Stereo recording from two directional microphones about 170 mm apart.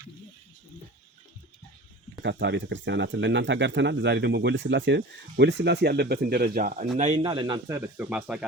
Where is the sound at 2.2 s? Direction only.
90° right; by 6.9 s 55° right (ahead or behind).